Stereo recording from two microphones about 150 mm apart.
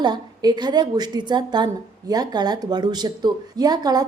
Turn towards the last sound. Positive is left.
turn(degrees=-25)  # may be behind; listen again after turning